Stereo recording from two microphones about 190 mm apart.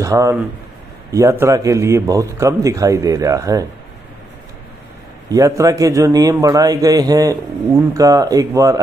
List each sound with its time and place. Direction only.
0.0 s a man's voice: 15° right (ahead or behind)
5.3 s a man's voice: 15° right (ahead or behind)